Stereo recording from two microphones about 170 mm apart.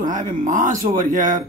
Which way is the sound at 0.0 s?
50° right (ahead or behind).